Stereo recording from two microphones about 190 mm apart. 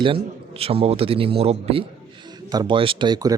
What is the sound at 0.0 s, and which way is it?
Speech, 30° right (ahead or behind).